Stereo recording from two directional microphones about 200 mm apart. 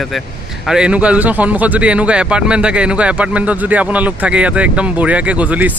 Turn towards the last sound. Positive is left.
turn(degrees=-5)  # may be behind; listen again after turning